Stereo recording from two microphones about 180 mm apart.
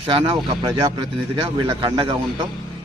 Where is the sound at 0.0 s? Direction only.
30° right (ahead or behind).